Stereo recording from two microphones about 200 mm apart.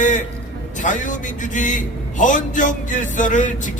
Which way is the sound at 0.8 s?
40° left (ahead or behind).